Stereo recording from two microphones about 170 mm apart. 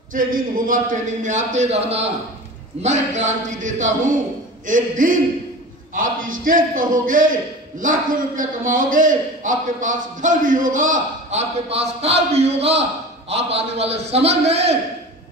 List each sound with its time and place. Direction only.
0.1 s a man's voice: 55° right (ahead or behind)
8.4 s a man's voice: 50° right (ahead or behind)